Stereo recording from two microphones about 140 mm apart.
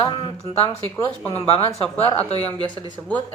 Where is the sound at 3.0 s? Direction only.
10° left (ahead or behind).